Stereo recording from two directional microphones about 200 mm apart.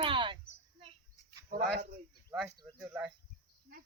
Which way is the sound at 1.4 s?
45° right (ahead or behind).